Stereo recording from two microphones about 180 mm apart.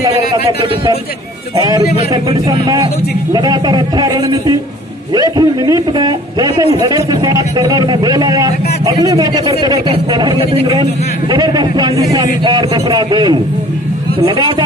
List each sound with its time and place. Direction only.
3.3 s a man's voice: 25° right (ahead or behind)